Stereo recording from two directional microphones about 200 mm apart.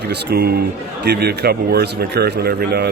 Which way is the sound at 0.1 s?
50° right (ahead or behind).